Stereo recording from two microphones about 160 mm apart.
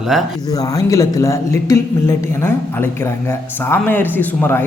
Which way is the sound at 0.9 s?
20° left (ahead or behind).